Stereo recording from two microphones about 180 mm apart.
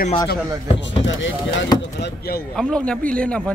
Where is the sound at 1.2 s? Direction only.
90° left.